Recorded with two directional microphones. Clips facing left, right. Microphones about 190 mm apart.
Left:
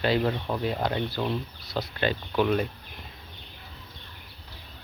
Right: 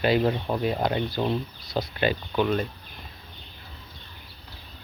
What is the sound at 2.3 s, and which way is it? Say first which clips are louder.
Speech: left 2 dB; 5° left (ahead or behind).